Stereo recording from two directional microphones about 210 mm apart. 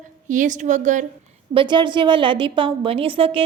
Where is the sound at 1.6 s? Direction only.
20° right (ahead or behind).